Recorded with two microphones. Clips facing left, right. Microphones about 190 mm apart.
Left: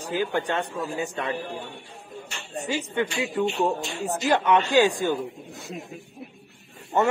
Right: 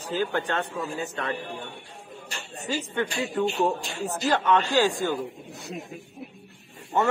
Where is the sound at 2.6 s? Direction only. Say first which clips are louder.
Left 1 dB; 15° left (ahead or behind).